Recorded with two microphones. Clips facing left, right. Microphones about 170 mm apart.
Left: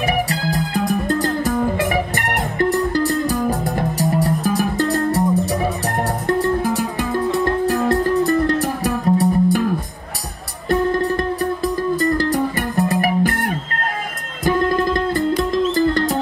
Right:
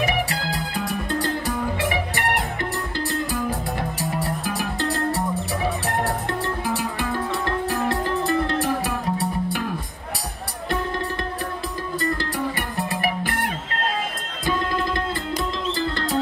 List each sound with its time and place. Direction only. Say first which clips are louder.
0.0 s music: left 4 dB; 40° left (ahead or behind)
8.3 s music: left 4 dB; 45° left (ahead or behind)
11.6 s music: left 8 dB; 45° left (ahead or behind)
15.5 s music: left 9 dB; 45° left (ahead or behind)